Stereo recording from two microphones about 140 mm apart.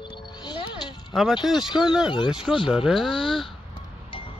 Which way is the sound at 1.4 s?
Centre (ahead or behind).